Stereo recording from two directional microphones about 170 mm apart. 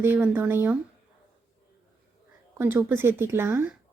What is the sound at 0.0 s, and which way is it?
Speech, 10° right (ahead or behind).